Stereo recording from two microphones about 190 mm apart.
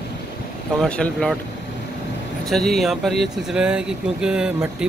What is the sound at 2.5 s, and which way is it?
Speech, centre (ahead or behind).